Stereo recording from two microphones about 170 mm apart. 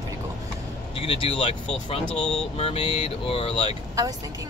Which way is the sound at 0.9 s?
35° left (ahead or behind).